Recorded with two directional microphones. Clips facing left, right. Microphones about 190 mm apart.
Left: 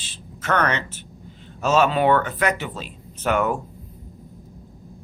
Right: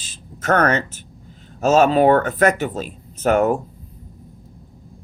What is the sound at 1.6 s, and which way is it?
Speech, 45° right (ahead or behind).